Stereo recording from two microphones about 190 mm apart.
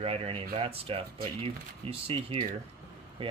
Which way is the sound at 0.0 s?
30° right (ahead or behind).